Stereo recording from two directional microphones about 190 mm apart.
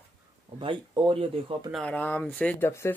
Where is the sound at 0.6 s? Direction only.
25° right (ahead or behind).